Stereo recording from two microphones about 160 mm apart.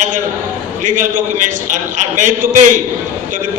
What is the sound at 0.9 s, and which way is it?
A man's voice, 55° right (ahead or behind).